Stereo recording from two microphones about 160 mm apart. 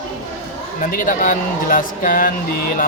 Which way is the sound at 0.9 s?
60° left (ahead or behind).